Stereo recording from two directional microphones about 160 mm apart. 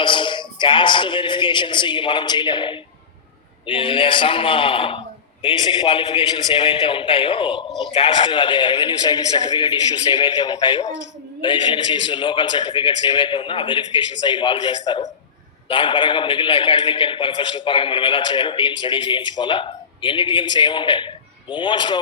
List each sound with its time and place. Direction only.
0.0 s a man's voice: 30° left (ahead or behind)
7.7 s a man's voice: centre (ahead or behind)
7.9 s a man's voice: 30° left (ahead or behind)